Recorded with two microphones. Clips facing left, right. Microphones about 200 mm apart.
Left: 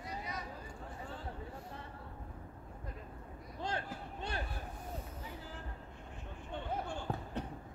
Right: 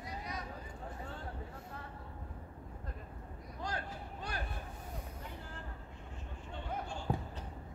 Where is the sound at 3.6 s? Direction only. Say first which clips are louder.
Left 2 dB; 25° left (ahead or behind).